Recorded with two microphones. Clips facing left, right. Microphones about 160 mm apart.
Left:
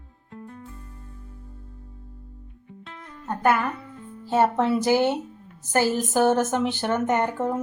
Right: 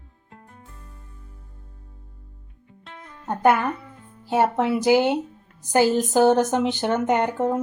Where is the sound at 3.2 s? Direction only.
20° right (ahead or behind).